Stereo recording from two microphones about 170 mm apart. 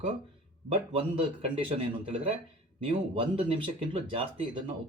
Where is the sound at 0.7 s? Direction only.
35° right (ahead or behind).